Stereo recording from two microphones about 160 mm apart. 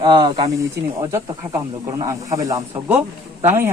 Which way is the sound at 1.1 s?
20° right (ahead or behind).